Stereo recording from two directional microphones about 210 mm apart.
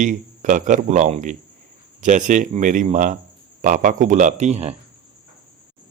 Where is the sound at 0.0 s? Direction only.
35° right (ahead or behind).